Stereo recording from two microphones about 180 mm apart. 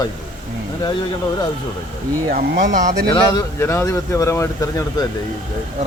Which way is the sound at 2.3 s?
50° right (ahead or behind).